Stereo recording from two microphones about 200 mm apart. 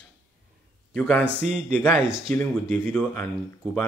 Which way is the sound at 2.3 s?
10° left (ahead or behind).